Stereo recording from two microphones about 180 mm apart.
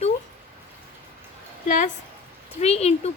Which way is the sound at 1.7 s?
45° left (ahead or behind).